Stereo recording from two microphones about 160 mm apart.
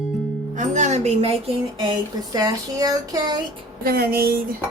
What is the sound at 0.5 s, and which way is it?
Music, 50° right (ahead or behind).